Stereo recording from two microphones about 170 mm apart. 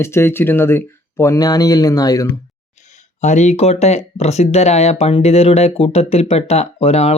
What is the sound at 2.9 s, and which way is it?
Speech, 45° left (ahead or behind).